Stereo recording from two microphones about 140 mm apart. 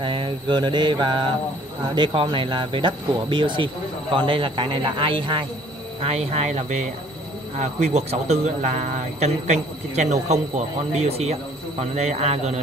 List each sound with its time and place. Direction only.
0.0 s speech: 35° right (ahead or behind)
6.0 s speech: 50° right (ahead or behind)